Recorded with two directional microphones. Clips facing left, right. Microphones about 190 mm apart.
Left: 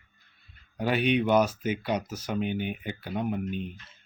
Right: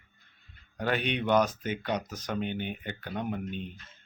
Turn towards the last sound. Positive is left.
turn(degrees=5)  # may be behind; listen again after turning